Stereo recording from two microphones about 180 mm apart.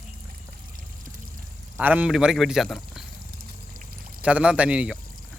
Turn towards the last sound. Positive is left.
turn(degrees=-5)  # may be behind; listen again after turning